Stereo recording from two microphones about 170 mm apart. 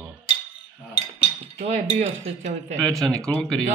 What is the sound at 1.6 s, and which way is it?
Speech, 40° right (ahead or behind).